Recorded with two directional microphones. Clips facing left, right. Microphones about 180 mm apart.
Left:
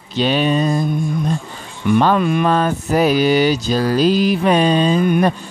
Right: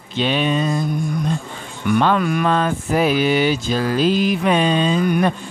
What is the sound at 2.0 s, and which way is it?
Speech, 25° left (ahead or behind).